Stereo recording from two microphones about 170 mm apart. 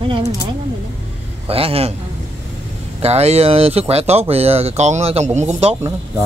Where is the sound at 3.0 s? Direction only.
40° right (ahead or behind).